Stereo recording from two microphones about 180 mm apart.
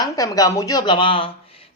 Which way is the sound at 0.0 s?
20° left (ahead or behind).